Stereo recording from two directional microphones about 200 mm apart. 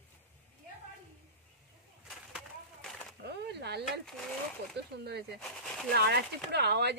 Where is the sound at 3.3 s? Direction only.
55° right (ahead or behind).